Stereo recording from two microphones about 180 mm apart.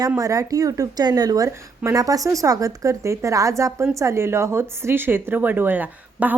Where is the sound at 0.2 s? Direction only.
20° right (ahead or behind).